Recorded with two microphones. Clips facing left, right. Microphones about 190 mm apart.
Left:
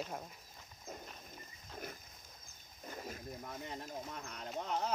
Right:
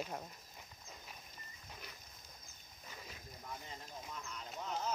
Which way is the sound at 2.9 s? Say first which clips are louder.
Left 8 dB; 50° left (ahead or behind).